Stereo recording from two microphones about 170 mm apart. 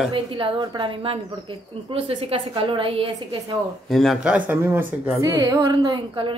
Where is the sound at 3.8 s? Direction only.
Centre (ahead or behind); by 6.3 s 25° right (ahead or behind).